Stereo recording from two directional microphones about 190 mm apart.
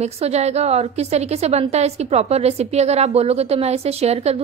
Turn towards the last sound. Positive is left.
turn(degrees=-30)  # may be behind; listen again after turning